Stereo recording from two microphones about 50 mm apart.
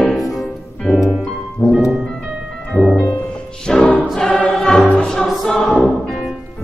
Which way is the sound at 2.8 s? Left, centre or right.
Left.